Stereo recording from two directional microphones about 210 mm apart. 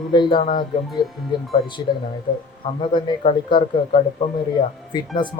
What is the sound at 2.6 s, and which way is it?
A man's voice, 20° left (ahead or behind).